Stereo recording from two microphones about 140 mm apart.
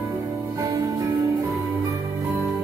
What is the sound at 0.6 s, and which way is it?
Music, 25° right (ahead or behind).